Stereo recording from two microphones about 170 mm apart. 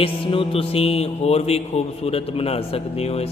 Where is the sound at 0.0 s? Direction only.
35° left (ahead or behind).